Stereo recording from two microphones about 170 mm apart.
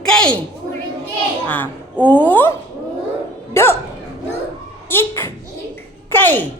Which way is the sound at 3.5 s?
15° left (ahead or behind).